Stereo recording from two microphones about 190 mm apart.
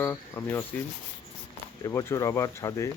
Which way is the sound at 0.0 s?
10° left (ahead or behind).